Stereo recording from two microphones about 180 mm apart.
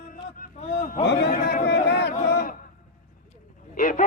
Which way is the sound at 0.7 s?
50° left (ahead or behind).